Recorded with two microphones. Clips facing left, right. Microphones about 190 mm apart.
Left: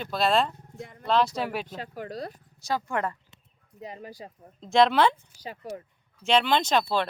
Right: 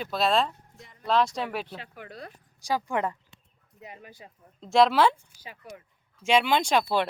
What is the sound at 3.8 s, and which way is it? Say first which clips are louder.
Speech: left 6 dB; 35° left (ahead or behind).